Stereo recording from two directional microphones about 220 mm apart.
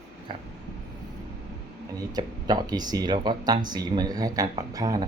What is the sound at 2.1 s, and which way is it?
Speech, 20° right (ahead or behind).